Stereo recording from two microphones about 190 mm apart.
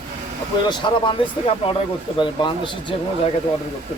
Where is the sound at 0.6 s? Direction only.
25° left (ahead or behind).